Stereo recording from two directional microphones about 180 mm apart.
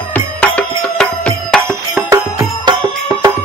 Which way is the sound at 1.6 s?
15° right (ahead or behind).